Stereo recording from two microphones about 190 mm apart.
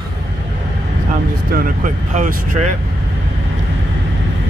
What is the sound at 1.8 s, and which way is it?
Speech, 40° right (ahead or behind).